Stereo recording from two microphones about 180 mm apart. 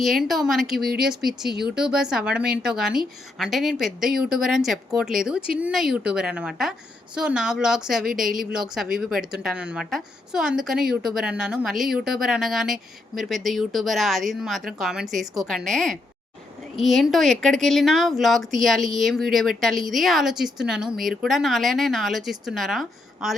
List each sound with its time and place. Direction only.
0.0 s a woman's voice: centre (ahead or behind)
8.0 s speech: 50° right (ahead or behind)
8.3 s a woman's voice: 5° right (ahead or behind)